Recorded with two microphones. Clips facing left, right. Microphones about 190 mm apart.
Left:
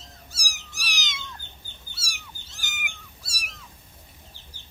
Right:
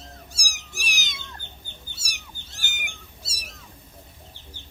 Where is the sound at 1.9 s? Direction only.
20° right (ahead or behind).